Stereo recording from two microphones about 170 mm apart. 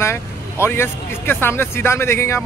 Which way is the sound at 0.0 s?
15° left (ahead or behind).